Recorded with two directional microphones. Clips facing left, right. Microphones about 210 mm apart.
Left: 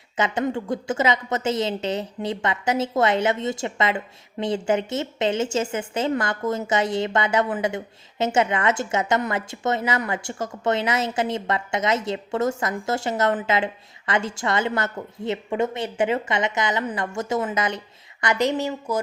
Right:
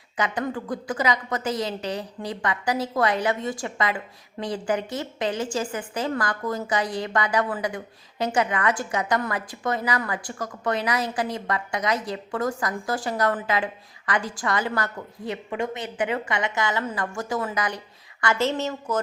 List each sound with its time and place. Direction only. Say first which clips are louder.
0.2 s a woman's voice: left 3 dB; 25° left (ahead or behind)